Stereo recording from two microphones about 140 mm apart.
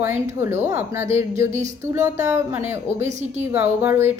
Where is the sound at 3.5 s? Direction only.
15° right (ahead or behind).